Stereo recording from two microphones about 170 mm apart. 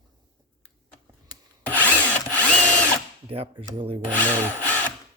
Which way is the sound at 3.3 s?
35° right (ahead or behind).